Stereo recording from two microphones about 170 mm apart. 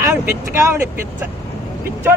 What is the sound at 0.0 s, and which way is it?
Vehicle, 10° right (ahead or behind).